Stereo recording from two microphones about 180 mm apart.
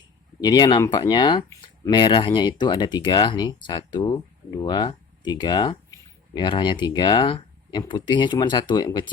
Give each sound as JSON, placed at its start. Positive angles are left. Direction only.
{"t": 0.4, "sound": "speech", "side_deg": 20}